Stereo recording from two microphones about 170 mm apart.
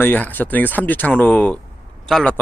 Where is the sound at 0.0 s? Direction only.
10° left (ahead or behind).